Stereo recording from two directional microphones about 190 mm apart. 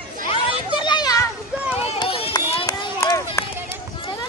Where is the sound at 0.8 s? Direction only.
25° left (ahead or behind).